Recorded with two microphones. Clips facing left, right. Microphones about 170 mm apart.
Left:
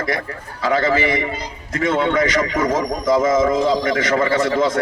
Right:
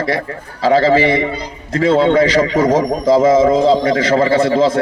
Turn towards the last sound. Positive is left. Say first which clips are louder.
# right 5 dB
turn(degrees=-30)  # may be behind; listen again after turning